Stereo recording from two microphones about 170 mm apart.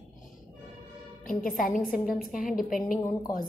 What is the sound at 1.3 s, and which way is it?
Speech, 50° left (ahead or behind).